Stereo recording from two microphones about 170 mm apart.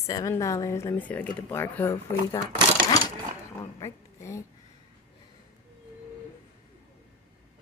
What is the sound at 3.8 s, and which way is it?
Speech, 15° left (ahead or behind).